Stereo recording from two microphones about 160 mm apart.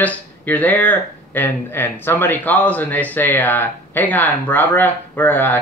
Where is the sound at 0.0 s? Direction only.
10° left (ahead or behind).